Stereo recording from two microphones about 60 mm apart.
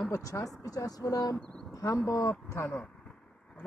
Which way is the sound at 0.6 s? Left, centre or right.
Left.